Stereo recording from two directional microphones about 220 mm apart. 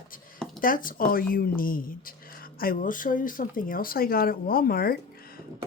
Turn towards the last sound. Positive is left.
turn(degrees=40)  # may be behind; listen again after turning